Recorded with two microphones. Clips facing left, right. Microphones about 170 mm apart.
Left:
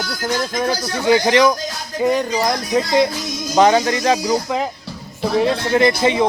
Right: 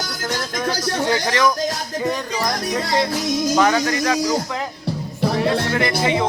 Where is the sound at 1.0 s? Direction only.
15° left (ahead or behind).